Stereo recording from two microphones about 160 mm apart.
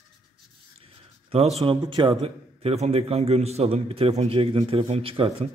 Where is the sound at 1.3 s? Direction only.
40° right (ahead or behind).